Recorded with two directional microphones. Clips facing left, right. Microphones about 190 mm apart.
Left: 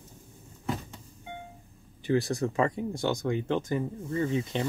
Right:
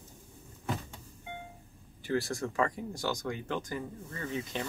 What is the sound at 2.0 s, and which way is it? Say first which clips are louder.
Speech: left 5 dB; 20° left (ahead or behind).